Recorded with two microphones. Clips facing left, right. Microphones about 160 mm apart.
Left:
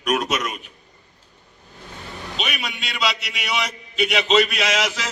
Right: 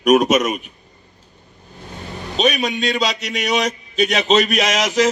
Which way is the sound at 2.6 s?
20° right (ahead or behind).